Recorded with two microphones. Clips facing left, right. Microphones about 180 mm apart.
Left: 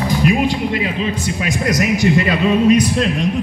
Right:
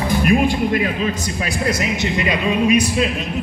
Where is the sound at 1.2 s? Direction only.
30° right (ahead or behind).